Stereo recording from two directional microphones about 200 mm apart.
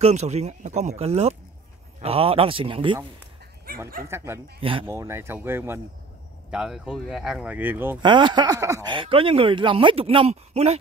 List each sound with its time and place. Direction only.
0.0 s speech: 35° right (ahead or behind)
3.7 s dog: 45° right (ahead or behind)
4.1 s speech: 10° right (ahead or behind)
4.6 s speech: 25° right (ahead or behind)
4.8 s speech: 15° right (ahead or behind)
8.0 s speech: 25° right (ahead or behind)